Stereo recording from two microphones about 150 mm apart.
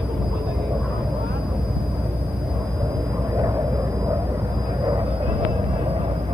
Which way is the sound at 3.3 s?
20° right (ahead or behind).